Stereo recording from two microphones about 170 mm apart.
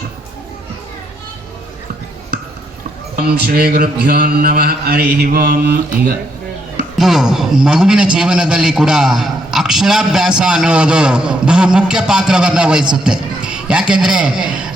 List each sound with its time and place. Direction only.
3.2 s mantra: 70° right (ahead or behind)
7.0 s a man's voice: 5° right (ahead or behind)